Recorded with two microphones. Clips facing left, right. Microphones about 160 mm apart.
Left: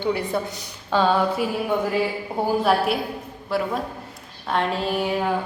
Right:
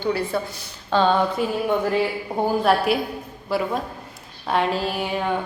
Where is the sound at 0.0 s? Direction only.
20° left (ahead or behind).